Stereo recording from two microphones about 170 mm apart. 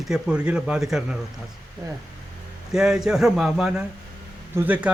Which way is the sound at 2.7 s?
5° right (ahead or behind).